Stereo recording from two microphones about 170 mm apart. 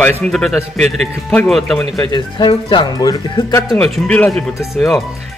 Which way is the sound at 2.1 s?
25° left (ahead or behind).